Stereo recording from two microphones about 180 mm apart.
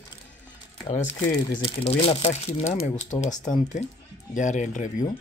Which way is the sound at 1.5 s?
30° left (ahead or behind).